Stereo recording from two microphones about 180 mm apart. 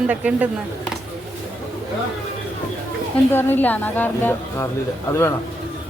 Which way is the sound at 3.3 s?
10° left (ahead or behind).